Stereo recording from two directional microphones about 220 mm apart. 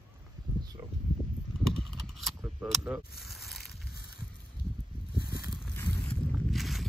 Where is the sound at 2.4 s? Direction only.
5° right (ahead or behind).